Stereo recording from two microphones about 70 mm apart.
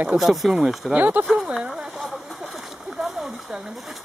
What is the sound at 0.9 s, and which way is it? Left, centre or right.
Speech, right.